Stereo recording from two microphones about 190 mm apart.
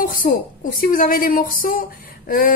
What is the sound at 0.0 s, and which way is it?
A woman's voice, 45° left (ahead or behind).